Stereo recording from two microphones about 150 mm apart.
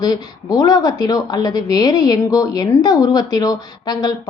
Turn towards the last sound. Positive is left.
turn(degrees=25)  # may be behind; listen again after turning